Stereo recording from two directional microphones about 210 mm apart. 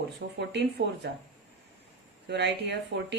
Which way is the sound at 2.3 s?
55° right (ahead or behind).